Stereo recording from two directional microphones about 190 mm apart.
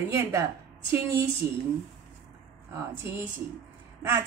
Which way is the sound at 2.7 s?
15° right (ahead or behind).